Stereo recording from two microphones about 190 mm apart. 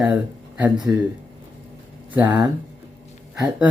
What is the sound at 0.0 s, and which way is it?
Speech, 5° right (ahead or behind).